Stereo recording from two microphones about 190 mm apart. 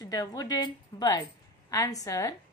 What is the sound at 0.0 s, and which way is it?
A woman's voice, 20° left (ahead or behind).